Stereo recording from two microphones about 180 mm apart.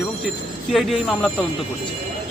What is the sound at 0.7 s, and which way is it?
Speech, centre (ahead or behind).